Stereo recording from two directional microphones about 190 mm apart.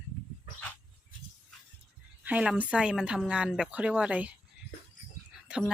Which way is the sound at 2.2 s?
5° right (ahead or behind).